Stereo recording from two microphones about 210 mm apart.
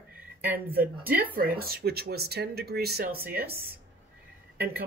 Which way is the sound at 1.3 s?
45° right (ahead or behind).